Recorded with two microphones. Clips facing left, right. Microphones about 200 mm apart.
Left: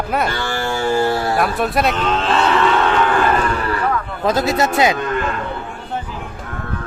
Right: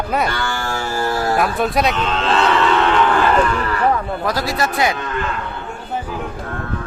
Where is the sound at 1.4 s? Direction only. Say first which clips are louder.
Even; centre (ahead or behind).